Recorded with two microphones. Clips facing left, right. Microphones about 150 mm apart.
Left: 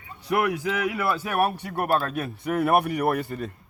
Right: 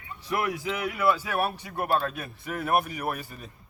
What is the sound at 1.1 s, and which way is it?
Speech, 60° left (ahead or behind).